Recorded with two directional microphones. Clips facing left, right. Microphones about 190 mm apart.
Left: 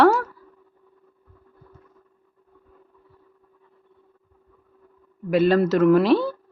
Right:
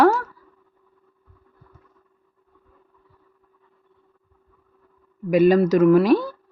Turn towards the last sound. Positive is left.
turn(degrees=-10)  # may be behind; listen again after turning